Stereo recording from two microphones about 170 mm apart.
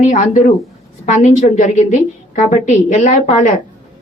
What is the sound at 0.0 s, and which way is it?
A woman's voice, 45° left (ahead or behind).